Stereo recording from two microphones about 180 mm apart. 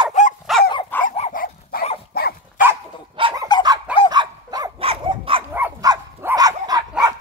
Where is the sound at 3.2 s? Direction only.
30° right (ahead or behind).